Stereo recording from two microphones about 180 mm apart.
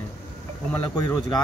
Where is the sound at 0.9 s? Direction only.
20° left (ahead or behind).